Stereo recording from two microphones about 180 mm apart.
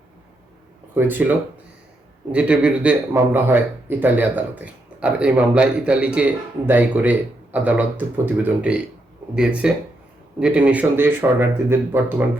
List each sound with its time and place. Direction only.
0.9 s speech: 10° right (ahead or behind)